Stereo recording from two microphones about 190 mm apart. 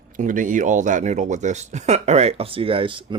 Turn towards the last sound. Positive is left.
turn(degrees=-25)  # may be behind; listen again after turning